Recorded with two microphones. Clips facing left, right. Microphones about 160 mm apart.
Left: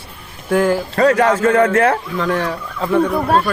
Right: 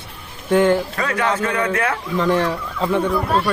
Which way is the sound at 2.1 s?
Centre (ahead or behind).